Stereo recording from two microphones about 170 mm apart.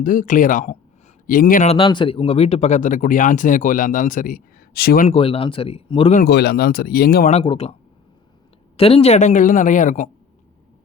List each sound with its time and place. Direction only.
0.0 s speech: 55° left (ahead or behind)
1.6 s speech: 30° left (ahead or behind); by 5.0 s 65° left (ahead or behind)
5.0 s speech: 35° left (ahead or behind)
6.2 s speech: 70° left (ahead or behind)
7.3 s speech: 35° left (ahead or behind)